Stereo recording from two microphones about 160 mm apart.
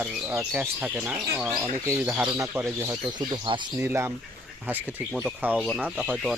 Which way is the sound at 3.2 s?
30° right (ahead or behind).